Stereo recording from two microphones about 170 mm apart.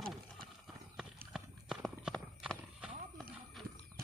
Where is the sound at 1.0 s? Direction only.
Centre (ahead or behind).